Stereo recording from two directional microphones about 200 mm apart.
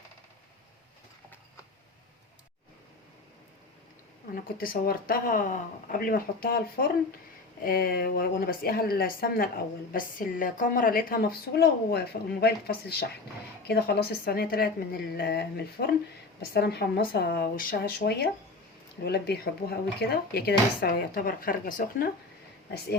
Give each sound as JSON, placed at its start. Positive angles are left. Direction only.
{"t": 4.4, "sound": "a woman's voice", "side_deg": 45}